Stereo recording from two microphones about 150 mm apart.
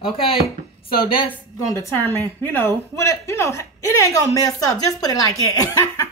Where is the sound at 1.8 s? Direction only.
15° left (ahead or behind).